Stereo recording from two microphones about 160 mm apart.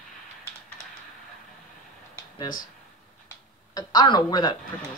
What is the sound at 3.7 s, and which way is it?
Speech, 25° left (ahead or behind).